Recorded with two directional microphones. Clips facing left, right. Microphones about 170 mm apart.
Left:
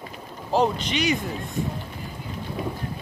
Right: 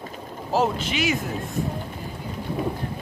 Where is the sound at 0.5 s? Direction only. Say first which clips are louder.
Left 1 dB; 5° right (ahead or behind).